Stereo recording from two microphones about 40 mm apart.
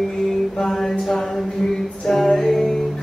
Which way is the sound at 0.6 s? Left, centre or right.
Centre.